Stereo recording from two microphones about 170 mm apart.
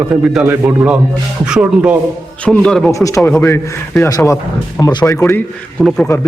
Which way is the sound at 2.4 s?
5° left (ahead or behind).